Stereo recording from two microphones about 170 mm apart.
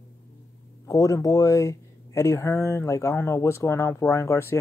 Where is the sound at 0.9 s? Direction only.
20° left (ahead or behind).